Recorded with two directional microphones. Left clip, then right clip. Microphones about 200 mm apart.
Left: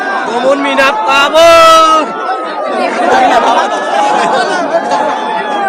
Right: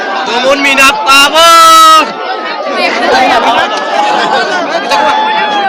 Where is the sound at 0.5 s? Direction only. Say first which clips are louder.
Right 4 dB; 20° left (ahead or behind).